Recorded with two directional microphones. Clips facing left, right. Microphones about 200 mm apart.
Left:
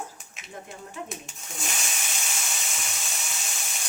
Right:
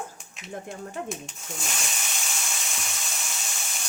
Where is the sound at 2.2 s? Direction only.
Centre (ahead or behind).